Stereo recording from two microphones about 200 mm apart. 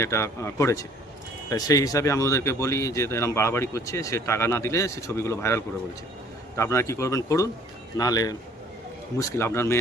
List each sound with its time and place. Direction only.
0.0 s speech: 15° left (ahead or behind)